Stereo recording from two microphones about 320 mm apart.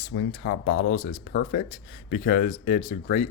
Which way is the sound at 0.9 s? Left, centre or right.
Left.